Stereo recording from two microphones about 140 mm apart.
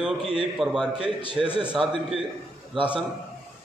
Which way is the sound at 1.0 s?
40° left (ahead or behind).